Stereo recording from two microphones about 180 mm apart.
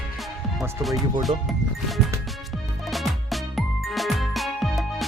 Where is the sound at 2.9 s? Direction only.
Centre (ahead or behind).